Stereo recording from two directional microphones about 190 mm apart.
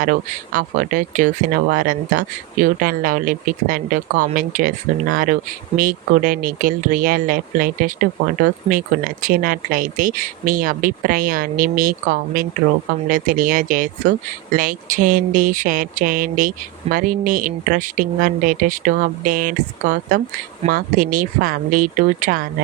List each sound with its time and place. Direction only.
0.0 s speech: 45° right (ahead or behind)